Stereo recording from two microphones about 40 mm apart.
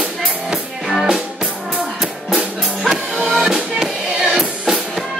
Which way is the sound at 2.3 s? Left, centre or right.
Centre.